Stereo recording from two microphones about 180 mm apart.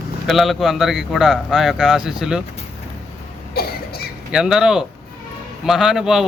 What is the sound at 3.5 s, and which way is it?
Cough, 60° left (ahead or behind).